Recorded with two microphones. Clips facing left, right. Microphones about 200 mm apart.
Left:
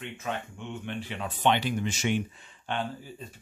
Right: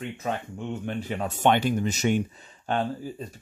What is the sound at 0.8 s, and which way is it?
Speech, 45° right (ahead or behind).